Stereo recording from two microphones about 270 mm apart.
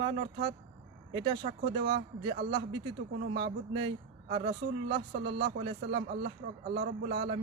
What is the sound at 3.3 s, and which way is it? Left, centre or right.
Speech, right.